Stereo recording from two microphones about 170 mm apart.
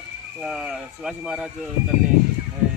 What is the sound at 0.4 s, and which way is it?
Speech, 5° right (ahead or behind).